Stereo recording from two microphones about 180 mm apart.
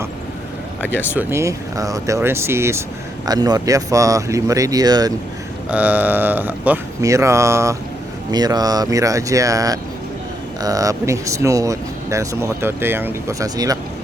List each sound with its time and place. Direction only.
1.1 s speech: 10° right (ahead or behind)
5.7 s speech: 10° right (ahead or behind)